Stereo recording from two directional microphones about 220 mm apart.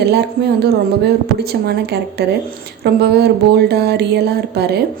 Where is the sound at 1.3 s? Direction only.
45° right (ahead or behind).